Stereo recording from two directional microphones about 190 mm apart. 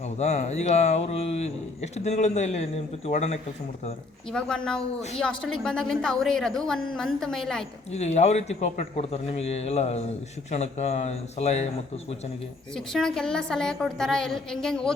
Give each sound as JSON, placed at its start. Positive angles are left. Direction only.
{"t": 0.2, "sound": "speech", "side_deg": 35}
{"t": 4.3, "sound": "a woman's voice", "side_deg": 5}
{"t": 7.9, "sound": "speech", "side_deg": 35}
{"t": 12.7, "sound": "a woman's voice", "side_deg": 5}